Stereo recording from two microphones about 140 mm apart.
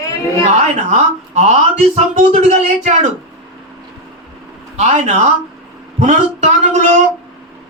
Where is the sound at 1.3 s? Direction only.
55° right (ahead or behind).